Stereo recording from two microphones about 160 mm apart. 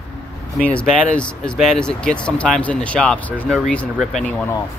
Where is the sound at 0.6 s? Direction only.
5° left (ahead or behind).